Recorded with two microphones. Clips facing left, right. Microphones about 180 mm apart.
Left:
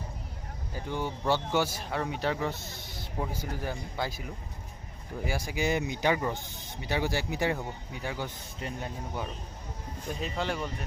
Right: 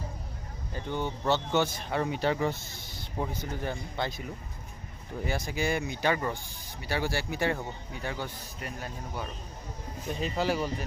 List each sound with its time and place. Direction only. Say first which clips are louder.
0.7 s speech: right 1 dB; 10° left (ahead or behind)
5.2 s speech: even; 10° left (ahead or behind)
8.6 s speech: left 2 dB; 25° left (ahead or behind)
10.2 s speech: right 4 dB; centre (ahead or behind)